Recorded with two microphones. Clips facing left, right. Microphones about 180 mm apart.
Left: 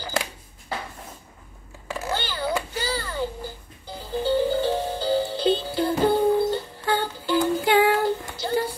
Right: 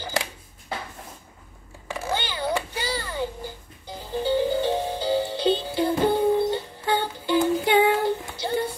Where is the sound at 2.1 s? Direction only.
20° right (ahead or behind).